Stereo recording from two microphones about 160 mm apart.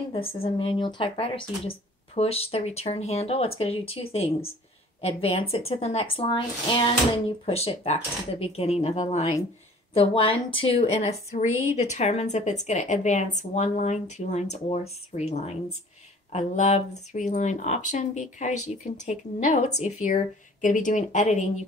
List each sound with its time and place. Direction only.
0.1 s a woman's voice: 35° left (ahead or behind)